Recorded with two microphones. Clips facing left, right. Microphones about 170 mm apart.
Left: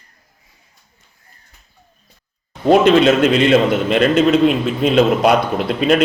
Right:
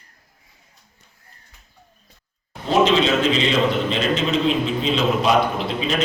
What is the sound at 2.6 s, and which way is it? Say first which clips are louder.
A man's voice: left 7 dB; 55° left (ahead or behind).